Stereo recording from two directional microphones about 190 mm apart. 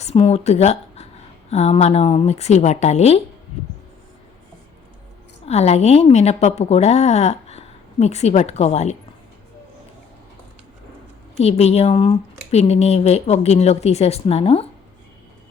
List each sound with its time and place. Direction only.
0.0 s speech: 35° left (ahead or behind)
5.5 s speech: 35° left (ahead or behind)
11.3 s speech: 35° left (ahead or behind)